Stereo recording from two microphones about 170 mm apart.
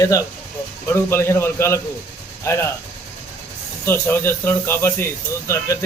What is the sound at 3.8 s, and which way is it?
Speech, 15° left (ahead or behind).